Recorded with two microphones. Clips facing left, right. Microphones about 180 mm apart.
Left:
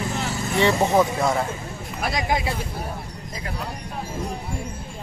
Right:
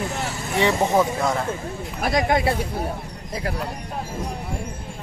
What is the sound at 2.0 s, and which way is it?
Speech, 50° right (ahead or behind).